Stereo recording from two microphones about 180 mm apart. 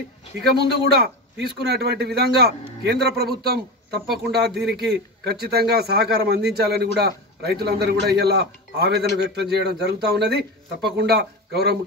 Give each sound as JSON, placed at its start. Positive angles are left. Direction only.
{"t": 0.4, "sound": "speech", "side_deg": -60}